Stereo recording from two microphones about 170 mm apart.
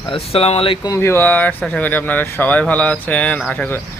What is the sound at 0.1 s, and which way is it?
Speech, 35° left (ahead or behind).